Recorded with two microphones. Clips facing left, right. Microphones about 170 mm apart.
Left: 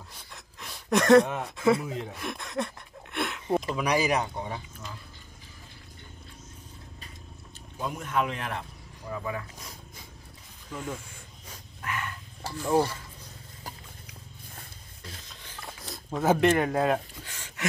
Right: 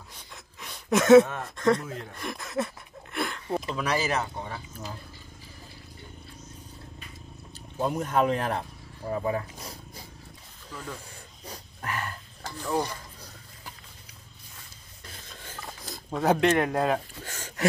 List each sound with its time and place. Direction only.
0.1 s a sound: centre (ahead or behind)
1.4 s speech: 5° left (ahead or behind)
2.1 s a sound: centre (ahead or behind)
3.7 s speech: 15° left (ahead or behind)
7.8 s speech: 35° right (ahead or behind)
11.4 s dog: 35° right (ahead or behind)
12.4 s speech: 15° left (ahead or behind)
15.6 s speech: centre (ahead or behind)
17.2 s a sound: 40° right (ahead or behind)